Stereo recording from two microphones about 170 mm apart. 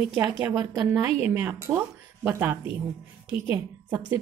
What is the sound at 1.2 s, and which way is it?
A woman's voice, 10° right (ahead or behind).